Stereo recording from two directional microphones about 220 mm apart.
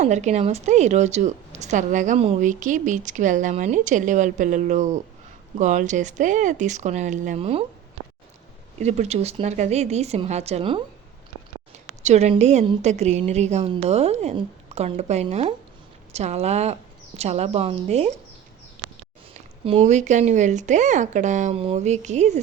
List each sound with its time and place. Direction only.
0.0 s a woman's voice: 30° right (ahead or behind)
8.8 s a woman's voice: 30° right (ahead or behind)
12.0 s a woman's voice: 30° right (ahead or behind)
19.6 s a woman's voice: 30° right (ahead or behind)